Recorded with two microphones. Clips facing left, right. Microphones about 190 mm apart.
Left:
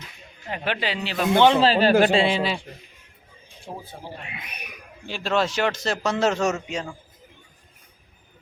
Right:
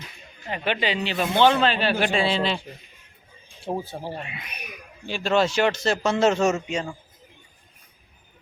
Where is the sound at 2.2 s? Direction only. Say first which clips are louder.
Left 1 dB; 10° left (ahead or behind).